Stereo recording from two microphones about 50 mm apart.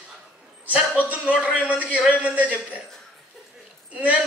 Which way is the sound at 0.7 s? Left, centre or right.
Right.